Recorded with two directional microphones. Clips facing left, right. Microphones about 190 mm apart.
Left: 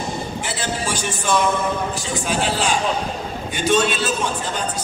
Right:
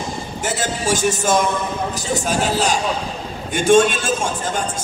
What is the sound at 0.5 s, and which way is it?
A man's voice, 45° right (ahead or behind).